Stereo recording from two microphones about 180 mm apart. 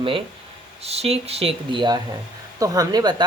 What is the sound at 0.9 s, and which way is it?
Speech, 35° right (ahead or behind).